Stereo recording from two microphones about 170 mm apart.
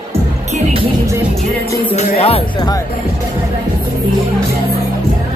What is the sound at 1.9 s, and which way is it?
Music, 35° left (ahead or behind).